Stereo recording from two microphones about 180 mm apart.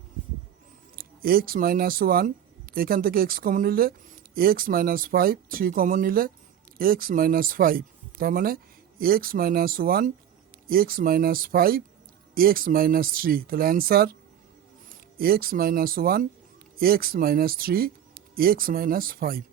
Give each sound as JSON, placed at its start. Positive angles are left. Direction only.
{"t": 0.9, "sound": "speech", "side_deg": -55}
{"t": 15.2, "sound": "speech", "side_deg": -55}